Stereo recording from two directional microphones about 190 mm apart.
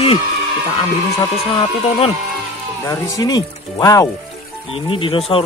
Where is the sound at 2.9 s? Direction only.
15° left (ahead or behind).